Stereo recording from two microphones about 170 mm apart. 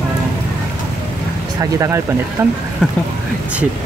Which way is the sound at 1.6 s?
20° right (ahead or behind).